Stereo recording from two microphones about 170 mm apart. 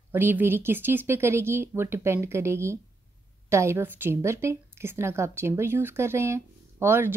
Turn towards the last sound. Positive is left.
turn(degrees=-15)  # may be behind; listen again after turning